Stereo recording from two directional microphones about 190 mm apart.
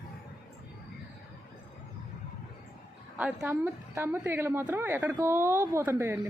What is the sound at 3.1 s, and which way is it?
A woman's voice, 10° right (ahead or behind).